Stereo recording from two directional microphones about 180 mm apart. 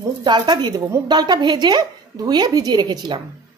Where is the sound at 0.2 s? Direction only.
25° right (ahead or behind).